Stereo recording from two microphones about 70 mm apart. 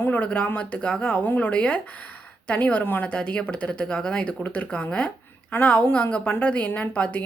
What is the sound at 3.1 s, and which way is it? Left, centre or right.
A woman's voice, centre.